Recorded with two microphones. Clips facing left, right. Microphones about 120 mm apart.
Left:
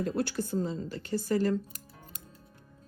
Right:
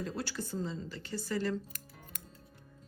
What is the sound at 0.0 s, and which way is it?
Speech, 55° left (ahead or behind).